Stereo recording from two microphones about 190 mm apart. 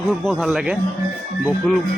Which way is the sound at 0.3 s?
Centre (ahead or behind).